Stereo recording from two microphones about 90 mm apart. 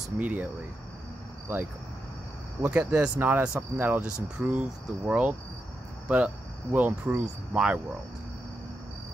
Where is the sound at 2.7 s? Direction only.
10° right (ahead or behind).